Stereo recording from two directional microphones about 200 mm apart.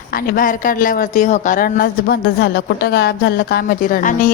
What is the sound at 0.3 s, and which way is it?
Speech, 45° left (ahead or behind).